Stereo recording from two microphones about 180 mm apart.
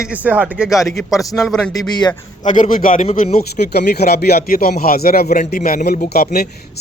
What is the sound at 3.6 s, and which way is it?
A man's voice, 65° left (ahead or behind).